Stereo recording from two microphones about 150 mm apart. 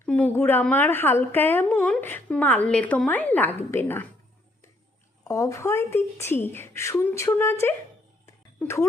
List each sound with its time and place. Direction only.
0.0 s a sound: 10° left (ahead or behind)
0.3 s speech: 15° left (ahead or behind)
5.3 s speech: 20° left (ahead or behind)